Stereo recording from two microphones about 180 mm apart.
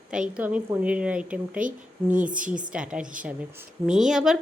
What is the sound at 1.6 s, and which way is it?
Speech, 45° right (ahead or behind).